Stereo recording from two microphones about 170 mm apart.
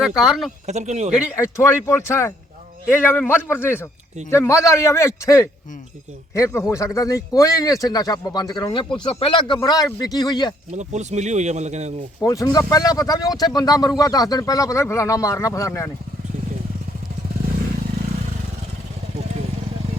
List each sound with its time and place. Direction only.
0.2 s speech: centre (ahead or behind)
0.7 s speech: 40° right (ahead or behind)
1.4 s a man's voice: 15° left (ahead or behind)
10.7 s speech: 40° right (ahead or behind)
12.2 s speech: 20° left (ahead or behind)